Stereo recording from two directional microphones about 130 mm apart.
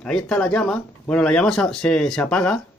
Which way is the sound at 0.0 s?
5° left (ahead or behind).